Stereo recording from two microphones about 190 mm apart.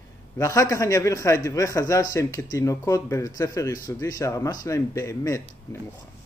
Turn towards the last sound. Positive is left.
turn(degrees=15)  # may be behind; listen again after turning